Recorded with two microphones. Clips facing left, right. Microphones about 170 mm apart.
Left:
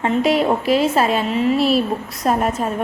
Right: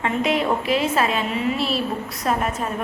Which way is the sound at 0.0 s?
35° left (ahead or behind).